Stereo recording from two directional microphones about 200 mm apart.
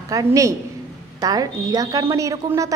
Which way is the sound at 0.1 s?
15° right (ahead or behind).